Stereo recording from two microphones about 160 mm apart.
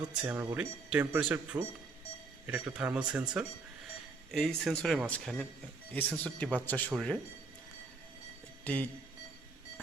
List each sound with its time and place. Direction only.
0.2 s speech: 10° right (ahead or behind)
8.6 s speech: 10° left (ahead or behind)